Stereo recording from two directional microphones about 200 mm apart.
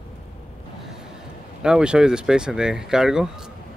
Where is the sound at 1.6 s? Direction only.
5° right (ahead or behind).